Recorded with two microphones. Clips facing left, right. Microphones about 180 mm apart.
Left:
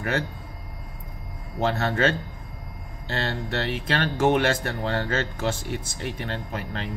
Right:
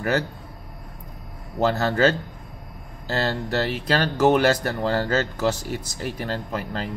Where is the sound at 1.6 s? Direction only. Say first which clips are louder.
Right 4 dB; 40° right (ahead or behind).